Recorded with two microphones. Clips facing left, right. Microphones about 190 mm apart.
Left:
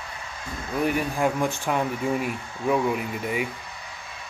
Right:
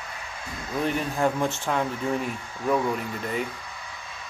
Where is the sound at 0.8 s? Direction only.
10° left (ahead or behind).